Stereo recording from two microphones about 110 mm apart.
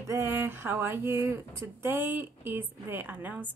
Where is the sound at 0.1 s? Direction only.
20° right (ahead or behind).